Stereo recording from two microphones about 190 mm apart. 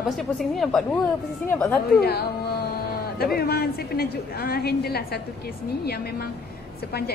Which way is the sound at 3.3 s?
55° left (ahead or behind).